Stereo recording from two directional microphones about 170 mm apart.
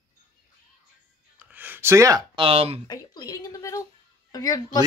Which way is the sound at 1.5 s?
10° right (ahead or behind).